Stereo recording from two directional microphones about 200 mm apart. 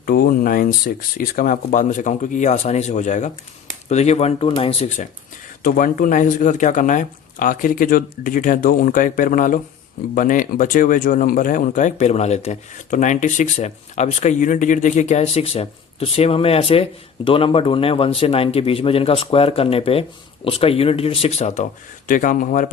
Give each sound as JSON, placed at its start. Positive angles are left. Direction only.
{"t": 0.0, "sound": "speech", "side_deg": 45}
{"t": 5.6, "sound": "speech", "side_deg": 40}